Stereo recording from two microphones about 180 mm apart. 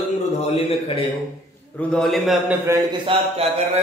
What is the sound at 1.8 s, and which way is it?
Speech, 5° left (ahead or behind).